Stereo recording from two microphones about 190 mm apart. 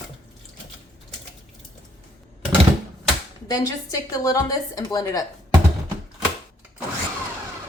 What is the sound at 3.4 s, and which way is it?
A woman's voice, 20° left (ahead or behind).